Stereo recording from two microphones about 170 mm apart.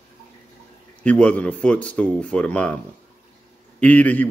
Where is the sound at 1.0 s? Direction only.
5° left (ahead or behind).